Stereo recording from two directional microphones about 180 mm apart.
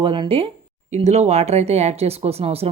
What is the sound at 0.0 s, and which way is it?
Speech, 30° right (ahead or behind).